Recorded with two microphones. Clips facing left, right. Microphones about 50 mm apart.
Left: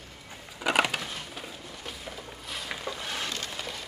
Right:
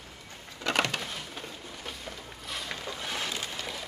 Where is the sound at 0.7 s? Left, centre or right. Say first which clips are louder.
Left 3 dB; centre.